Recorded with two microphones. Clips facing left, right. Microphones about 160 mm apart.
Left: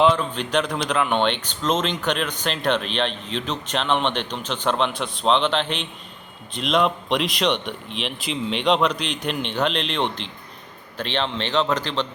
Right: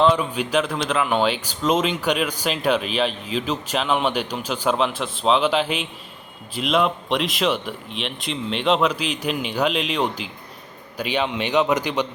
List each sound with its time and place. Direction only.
0.1 s speech: 10° right (ahead or behind)